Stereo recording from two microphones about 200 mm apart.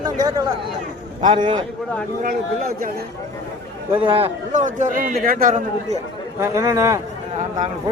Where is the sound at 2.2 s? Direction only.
45° right (ahead or behind).